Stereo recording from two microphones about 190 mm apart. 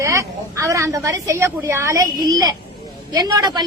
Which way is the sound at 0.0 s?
15° right (ahead or behind).